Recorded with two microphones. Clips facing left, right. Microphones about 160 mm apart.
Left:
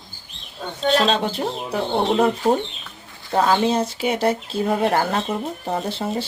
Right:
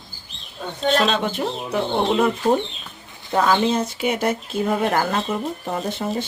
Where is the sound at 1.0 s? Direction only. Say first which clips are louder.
Left 1 dB; 35° left (ahead or behind).